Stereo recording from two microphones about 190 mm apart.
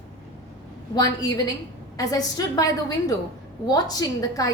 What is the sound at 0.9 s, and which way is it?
A woman's voice, 20° left (ahead or behind).